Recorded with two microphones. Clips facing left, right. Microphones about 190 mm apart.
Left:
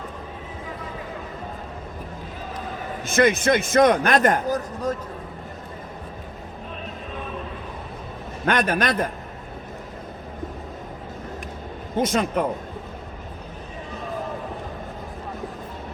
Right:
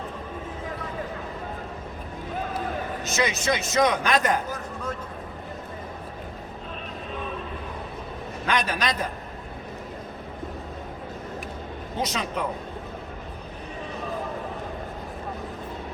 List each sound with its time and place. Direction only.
3.0 s a man's voice: 55° left (ahead or behind); by 4.9 s 40° left (ahead or behind)
8.4 s a man's voice: 55° left (ahead or behind)
11.9 s a man's voice: 50° left (ahead or behind)